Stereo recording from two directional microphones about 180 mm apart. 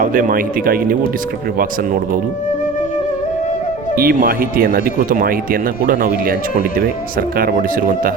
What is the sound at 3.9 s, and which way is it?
Speech, 55° right (ahead or behind).